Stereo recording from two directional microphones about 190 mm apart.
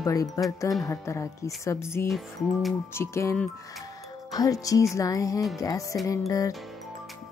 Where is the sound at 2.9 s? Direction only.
15° left (ahead or behind).